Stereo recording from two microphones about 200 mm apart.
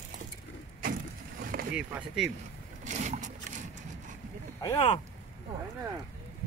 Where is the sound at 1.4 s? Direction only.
45° right (ahead or behind).